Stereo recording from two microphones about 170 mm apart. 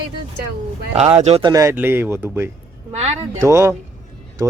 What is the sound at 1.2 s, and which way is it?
Speech, 35° right (ahead or behind).